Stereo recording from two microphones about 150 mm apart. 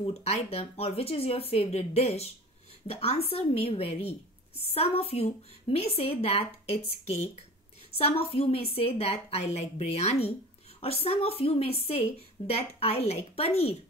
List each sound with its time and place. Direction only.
0.0 s a woman's voice: 45° left (ahead or behind)